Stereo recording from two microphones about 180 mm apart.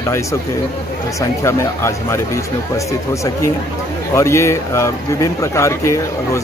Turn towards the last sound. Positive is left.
turn(degrees=15)  # may be behind; listen again after turning